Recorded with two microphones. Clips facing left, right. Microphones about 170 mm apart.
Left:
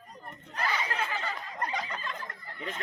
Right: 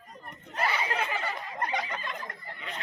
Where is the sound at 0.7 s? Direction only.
25° right (ahead or behind).